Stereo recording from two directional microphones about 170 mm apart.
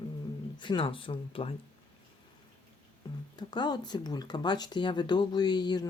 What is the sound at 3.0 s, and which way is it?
Speech, 20° left (ahead or behind).